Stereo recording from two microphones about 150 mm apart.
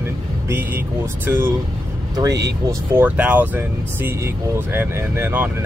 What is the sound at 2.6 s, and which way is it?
Speech, 10° right (ahead or behind).